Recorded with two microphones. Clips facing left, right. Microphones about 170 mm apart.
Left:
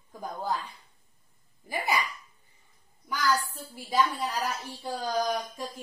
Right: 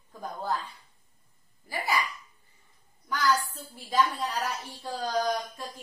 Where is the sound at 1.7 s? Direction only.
20° left (ahead or behind).